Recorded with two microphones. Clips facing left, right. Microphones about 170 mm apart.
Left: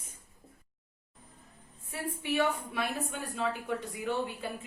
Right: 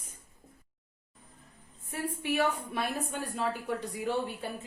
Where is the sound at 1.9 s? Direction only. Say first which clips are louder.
Right 1 dB; 40° right (ahead or behind).